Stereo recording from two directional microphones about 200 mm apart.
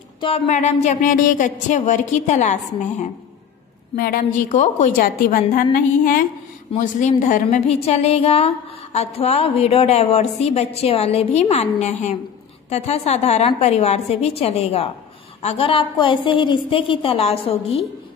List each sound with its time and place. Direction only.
0.2 s a woman's voice: 35° left (ahead or behind)
3.9 s a woman's voice: 50° left (ahead or behind); by 17.8 s 30° left (ahead or behind)